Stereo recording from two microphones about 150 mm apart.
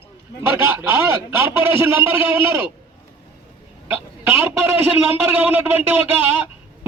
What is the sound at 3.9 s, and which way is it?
A man's voice, 15° right (ahead or behind).